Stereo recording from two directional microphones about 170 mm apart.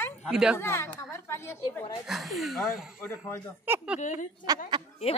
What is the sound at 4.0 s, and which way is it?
Speech, 50° left (ahead or behind).